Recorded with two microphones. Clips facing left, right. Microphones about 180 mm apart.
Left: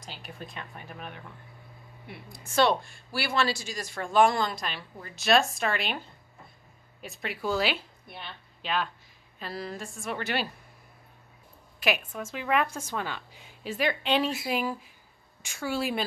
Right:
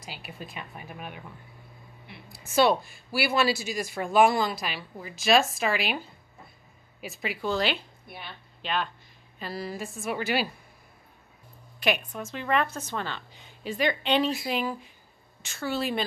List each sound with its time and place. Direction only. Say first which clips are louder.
0.0 s speech: right 1 dB; 5° right (ahead or behind)
2.3 s a woman's voice: right 2 dB; 5° right (ahead or behind)
11.8 s a woman's voice: right 1 dB; 5° left (ahead or behind)